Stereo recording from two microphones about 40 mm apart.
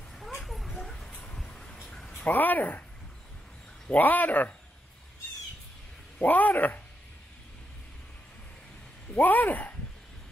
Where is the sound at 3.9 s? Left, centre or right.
Left.